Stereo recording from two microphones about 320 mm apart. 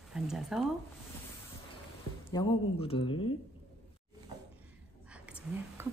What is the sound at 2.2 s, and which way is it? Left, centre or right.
Speech, centre.